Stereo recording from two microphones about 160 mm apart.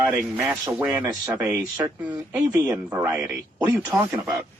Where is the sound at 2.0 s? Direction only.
10° right (ahead or behind).